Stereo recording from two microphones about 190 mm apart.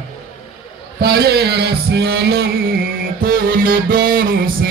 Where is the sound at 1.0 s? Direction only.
55° right (ahead or behind).